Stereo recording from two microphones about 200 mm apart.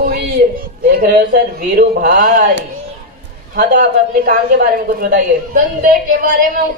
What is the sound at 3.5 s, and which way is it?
A woman's voice, 45° right (ahead or behind).